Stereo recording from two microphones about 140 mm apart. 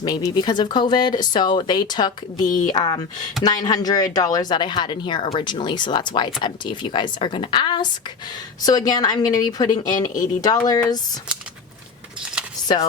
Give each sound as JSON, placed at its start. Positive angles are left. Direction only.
{"t": 0.0, "sound": "speech", "side_deg": 30}
{"t": 2.5, "sound": "speech", "side_deg": 65}
{"t": 2.7, "sound": "a woman's voice", "side_deg": 30}
{"t": 10.0, "sound": "speech", "side_deg": 65}
{"t": 10.4, "sound": "a woman's voice", "side_deg": 25}
{"t": 12.2, "sound": "keys jangling", "side_deg": -5}